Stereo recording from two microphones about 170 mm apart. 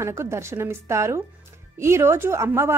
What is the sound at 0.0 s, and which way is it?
A woman's voice, 15° right (ahead or behind).